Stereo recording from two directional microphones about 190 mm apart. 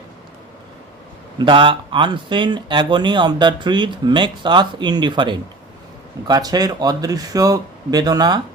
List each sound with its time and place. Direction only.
1.4 s speech: 25° right (ahead or behind)